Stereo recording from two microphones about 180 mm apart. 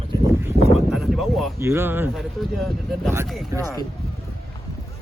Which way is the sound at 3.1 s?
15° right (ahead or behind).